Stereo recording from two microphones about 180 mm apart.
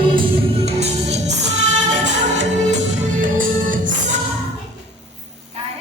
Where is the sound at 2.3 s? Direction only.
40° right (ahead or behind).